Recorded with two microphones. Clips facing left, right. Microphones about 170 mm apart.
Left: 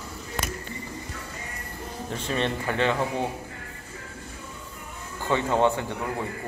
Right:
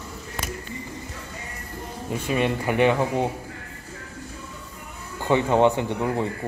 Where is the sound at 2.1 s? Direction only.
10° right (ahead or behind).